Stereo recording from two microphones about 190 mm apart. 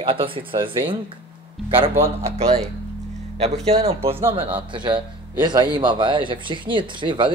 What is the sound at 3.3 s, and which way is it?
Speech, 35° right (ahead or behind).